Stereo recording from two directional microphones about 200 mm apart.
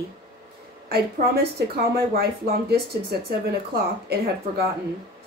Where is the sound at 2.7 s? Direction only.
50° right (ahead or behind).